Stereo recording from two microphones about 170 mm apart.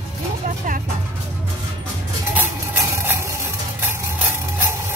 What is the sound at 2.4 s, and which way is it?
Stir, 15° right (ahead or behind).